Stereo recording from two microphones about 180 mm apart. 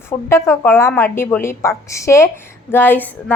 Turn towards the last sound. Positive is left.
turn(degrees=10)  # may be behind; listen again after turning